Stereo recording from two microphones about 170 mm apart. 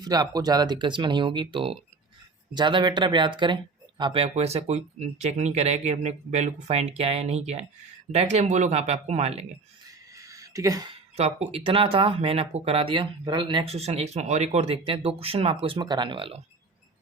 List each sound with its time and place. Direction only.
0.0 s speech: 25° right (ahead or behind); by 9.5 s 40° right (ahead or behind)
10.2 s a sound: 20° right (ahead or behind)
11.5 s speech: 30° right (ahead or behind)